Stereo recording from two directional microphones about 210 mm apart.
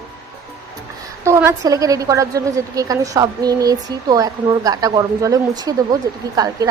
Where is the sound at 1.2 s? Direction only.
15° right (ahead or behind).